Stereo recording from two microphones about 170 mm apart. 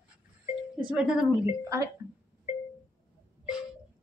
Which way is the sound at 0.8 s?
5° right (ahead or behind).